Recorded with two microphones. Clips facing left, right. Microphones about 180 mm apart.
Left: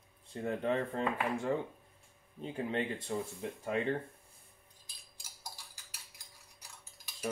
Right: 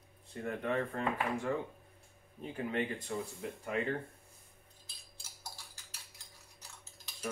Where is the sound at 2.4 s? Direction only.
30° left (ahead or behind).